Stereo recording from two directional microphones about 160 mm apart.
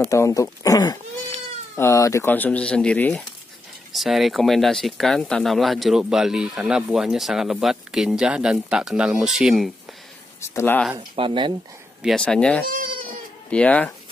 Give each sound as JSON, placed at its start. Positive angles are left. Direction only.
{"t": 0.1, "sound": "speech", "side_deg": 20}
{"t": 10.5, "sound": "speech", "side_deg": 15}
{"t": 11.0, "sound": "speech", "side_deg": -30}
{"t": 12.0, "sound": "speech", "side_deg": 0}